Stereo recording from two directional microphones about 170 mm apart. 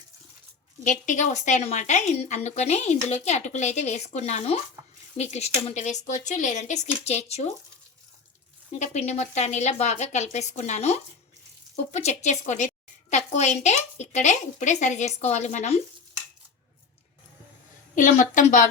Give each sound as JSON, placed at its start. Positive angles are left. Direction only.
{"t": 0.9, "sound": "a woman's voice", "side_deg": 45}
{"t": 8.7, "sound": "a woman's voice", "side_deg": 40}
{"t": 17.9, "sound": "a woman's voice", "side_deg": 50}